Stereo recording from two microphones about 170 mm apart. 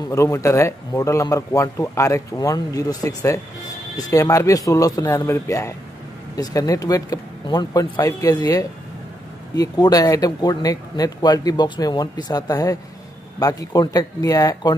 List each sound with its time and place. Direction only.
0.1 s speech: 15° left (ahead or behind)